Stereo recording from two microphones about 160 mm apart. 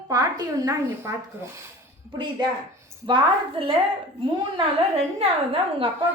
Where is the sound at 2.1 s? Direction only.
30° right (ahead or behind).